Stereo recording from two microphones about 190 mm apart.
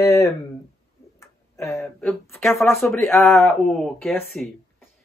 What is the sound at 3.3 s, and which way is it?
Speech, centre (ahead or behind).